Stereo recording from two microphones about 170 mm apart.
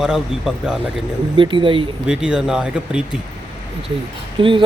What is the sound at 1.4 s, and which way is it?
Speech, 30° right (ahead or behind).